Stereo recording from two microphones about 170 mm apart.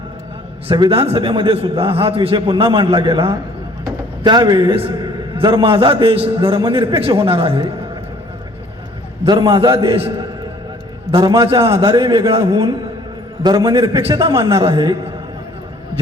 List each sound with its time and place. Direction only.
0.7 s a man's voice: 30° right (ahead or behind)
9.2 s a man's voice: 25° right (ahead or behind)
12.4 s a man's voice: 20° right (ahead or behind)